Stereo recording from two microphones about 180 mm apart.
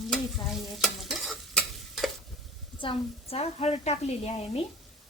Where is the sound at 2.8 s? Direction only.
30° left (ahead or behind).